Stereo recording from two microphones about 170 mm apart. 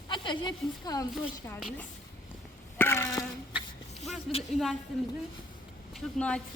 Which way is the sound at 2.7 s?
15° left (ahead or behind).